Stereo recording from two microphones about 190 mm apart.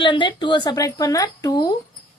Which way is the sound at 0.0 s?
25° left (ahead or behind).